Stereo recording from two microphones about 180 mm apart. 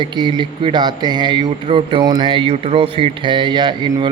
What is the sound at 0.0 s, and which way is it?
A man's voice, 25° right (ahead or behind).